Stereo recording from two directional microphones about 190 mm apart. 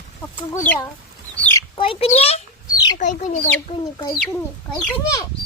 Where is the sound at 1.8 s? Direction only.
30° left (ahead or behind).